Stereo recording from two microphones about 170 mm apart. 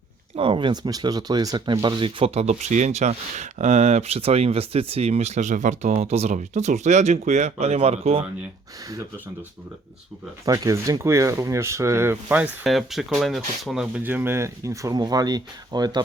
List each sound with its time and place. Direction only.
0.3 s speech: 30° right (ahead or behind)
10.4 s speech: 20° right (ahead or behind)